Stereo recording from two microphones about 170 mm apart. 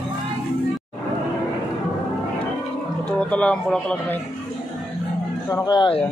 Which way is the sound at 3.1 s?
5° left (ahead or behind).